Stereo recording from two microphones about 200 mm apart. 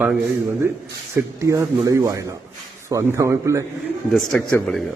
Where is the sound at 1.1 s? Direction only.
15° right (ahead or behind).